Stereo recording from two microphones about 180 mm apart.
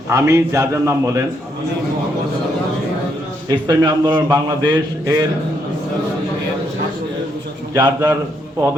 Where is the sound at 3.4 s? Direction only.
25° right (ahead or behind).